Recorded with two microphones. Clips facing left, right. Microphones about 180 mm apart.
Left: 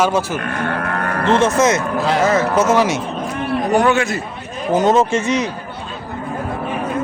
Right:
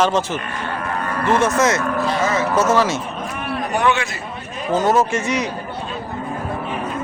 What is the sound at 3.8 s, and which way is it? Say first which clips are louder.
Speech: left 3 dB; 45° left (ahead or behind).